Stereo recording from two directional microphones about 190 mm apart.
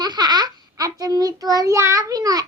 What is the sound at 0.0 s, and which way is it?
A child's voice, 20° right (ahead or behind).